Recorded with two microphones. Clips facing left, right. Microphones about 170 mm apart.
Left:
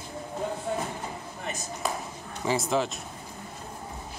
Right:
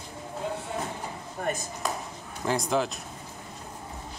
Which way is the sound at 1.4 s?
50° right (ahead or behind).